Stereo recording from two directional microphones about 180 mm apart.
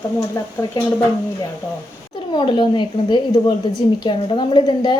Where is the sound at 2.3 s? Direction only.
25° left (ahead or behind).